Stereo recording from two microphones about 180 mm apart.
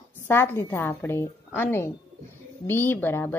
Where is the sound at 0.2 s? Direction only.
15° left (ahead or behind).